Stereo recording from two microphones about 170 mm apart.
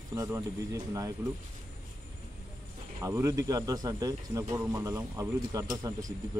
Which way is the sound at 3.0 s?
20° right (ahead or behind).